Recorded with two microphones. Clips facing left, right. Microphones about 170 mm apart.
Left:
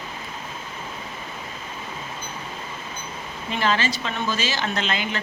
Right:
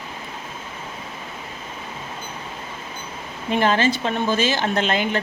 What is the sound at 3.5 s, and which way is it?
Speech, 50° right (ahead or behind).